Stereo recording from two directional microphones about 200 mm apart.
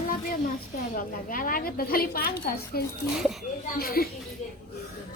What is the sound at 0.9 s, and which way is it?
A woman's voice, 45° left (ahead or behind).